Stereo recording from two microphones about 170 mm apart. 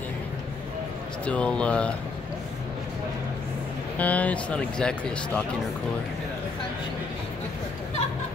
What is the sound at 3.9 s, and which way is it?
Speech, 10° left (ahead or behind).